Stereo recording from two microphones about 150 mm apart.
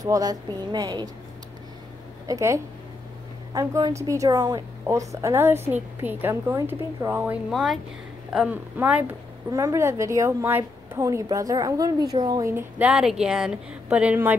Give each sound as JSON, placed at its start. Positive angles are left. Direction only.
{"t": 0.0, "sound": "a woman's voice", "side_deg": -25}
{"t": 2.2, "sound": "a woman's voice", "side_deg": -20}
{"t": 7.5, "sound": "speech", "side_deg": 0}
{"t": 9.5, "sound": "a woman's voice", "side_deg": -20}